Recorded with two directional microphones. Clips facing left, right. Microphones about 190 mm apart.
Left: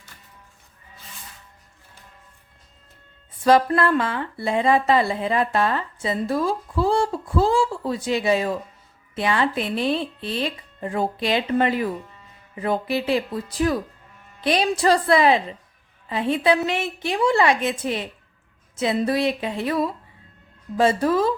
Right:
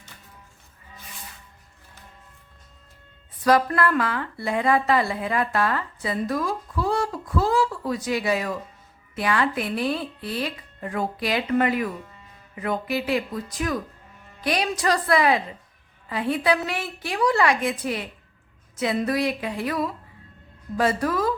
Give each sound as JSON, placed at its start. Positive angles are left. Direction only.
{"t": 3.4, "sound": "a woman's voice", "side_deg": 25}